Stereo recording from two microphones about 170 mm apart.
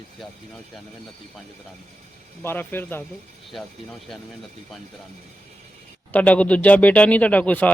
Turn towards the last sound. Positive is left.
turn(degrees=10)  # may be behind; listen again after turning